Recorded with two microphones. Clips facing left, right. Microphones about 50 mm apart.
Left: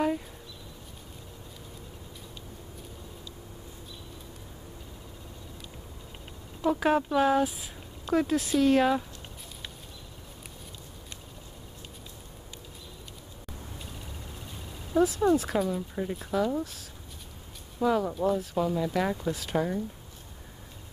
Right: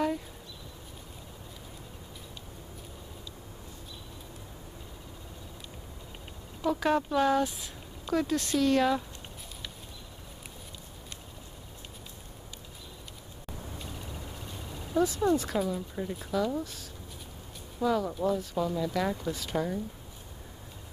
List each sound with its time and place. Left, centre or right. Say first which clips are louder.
6.6 s speech: left 2 dB; centre
13.7 s a sound: right 2 dB; centre
16.3 s speech: left 2 dB; centre
17.7 s speech: left 2 dB; centre